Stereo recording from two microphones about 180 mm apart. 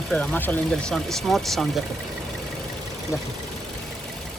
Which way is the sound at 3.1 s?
15° left (ahead or behind).